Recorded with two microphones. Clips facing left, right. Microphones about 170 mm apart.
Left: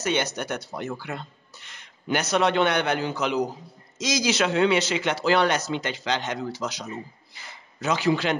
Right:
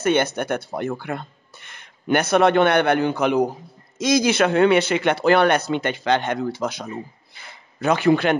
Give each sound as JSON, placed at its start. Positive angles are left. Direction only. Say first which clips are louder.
{"t": 0.0, "sound": "speech", "louder": "right 6 dB", "side_deg": -55}